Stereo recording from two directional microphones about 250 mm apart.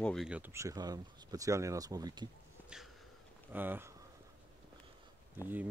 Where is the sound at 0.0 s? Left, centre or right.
Centre.